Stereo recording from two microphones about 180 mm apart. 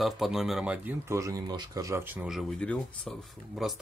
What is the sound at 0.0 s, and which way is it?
Speech, centre (ahead or behind).